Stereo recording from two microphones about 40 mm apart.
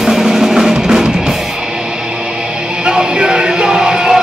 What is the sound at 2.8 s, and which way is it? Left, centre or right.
Music, centre.